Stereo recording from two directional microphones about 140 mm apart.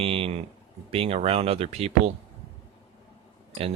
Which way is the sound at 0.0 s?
45° right (ahead or behind).